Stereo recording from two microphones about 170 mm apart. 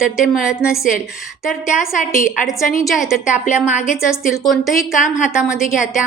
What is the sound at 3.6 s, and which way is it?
Speech, 45° left (ahead or behind).